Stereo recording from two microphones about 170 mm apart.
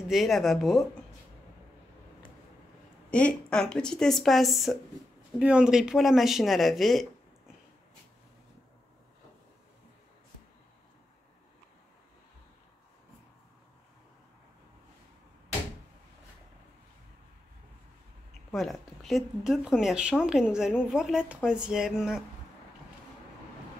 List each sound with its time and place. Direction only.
0.1 s speech: centre (ahead or behind)
3.1 s speech: 5° left (ahead or behind)
18.5 s speech: centre (ahead or behind)